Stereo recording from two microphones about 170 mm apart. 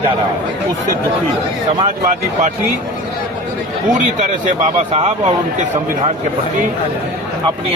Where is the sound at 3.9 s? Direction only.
45° right (ahead or behind).